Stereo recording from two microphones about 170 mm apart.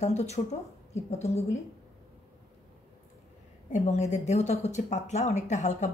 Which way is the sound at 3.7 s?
45° left (ahead or behind).